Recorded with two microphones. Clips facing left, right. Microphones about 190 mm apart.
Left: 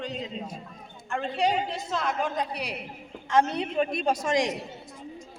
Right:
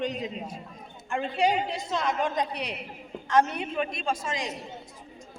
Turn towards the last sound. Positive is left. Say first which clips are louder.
# left 6 dB
turn(degrees=80)